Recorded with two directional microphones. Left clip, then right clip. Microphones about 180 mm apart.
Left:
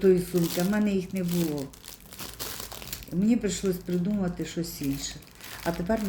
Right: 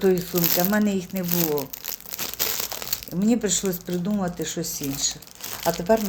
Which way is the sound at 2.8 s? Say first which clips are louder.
Even; centre (ahead or behind).